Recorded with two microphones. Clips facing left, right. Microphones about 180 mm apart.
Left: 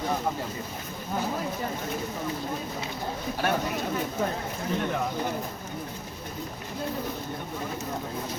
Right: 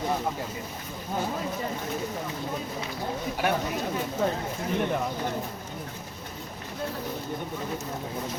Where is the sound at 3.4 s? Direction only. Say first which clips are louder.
Even; 15° right (ahead or behind).